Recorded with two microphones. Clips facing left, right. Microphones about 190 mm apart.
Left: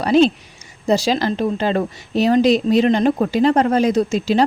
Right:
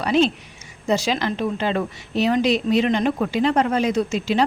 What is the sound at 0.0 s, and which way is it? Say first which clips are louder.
Speech: left 5 dB; 40° left (ahead or behind).